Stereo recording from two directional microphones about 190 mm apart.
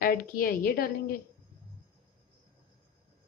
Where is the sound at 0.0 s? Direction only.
45° left (ahead or behind).